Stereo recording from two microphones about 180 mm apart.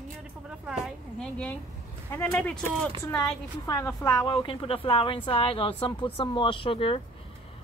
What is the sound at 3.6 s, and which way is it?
A woman's voice, 20° left (ahead or behind).